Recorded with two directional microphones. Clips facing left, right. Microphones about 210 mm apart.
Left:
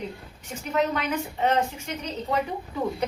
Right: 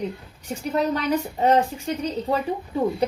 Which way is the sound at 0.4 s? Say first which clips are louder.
Right 2 dB; 35° right (ahead or behind).